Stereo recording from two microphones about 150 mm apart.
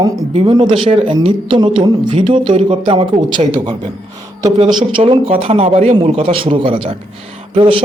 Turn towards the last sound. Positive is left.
turn(degrees=-35)  # may be behind; listen again after turning